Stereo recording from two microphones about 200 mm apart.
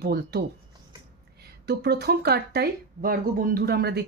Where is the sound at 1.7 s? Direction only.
55° right (ahead or behind).